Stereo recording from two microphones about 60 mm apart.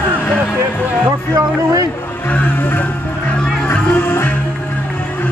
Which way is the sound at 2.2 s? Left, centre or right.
Left.